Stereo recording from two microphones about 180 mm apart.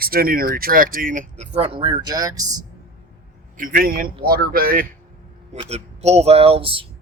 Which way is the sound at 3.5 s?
50° right (ahead or behind).